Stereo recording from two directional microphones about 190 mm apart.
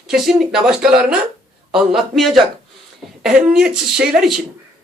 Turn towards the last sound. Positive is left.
turn(degrees=-5)  # may be behind; listen again after turning